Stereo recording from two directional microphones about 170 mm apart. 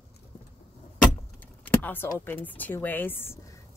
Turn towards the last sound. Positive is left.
turn(degrees=15)  # may be behind; listen again after turning